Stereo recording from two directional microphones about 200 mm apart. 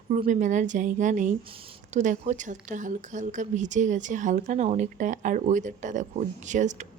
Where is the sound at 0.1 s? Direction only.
35° right (ahead or behind).